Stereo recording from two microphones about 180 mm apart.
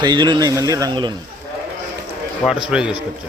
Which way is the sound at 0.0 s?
25° right (ahead or behind).